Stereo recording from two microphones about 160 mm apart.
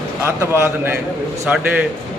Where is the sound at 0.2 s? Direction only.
15° right (ahead or behind).